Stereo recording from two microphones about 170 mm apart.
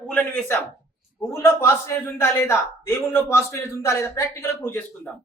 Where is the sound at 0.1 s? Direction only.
10° left (ahead or behind).